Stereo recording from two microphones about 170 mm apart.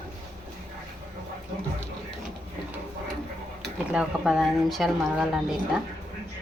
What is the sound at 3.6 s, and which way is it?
Speech, 5° right (ahead or behind).